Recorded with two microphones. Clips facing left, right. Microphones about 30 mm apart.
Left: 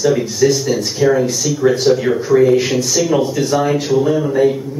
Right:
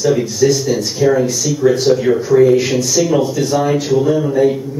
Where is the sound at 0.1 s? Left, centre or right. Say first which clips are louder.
Right 1 dB; centre.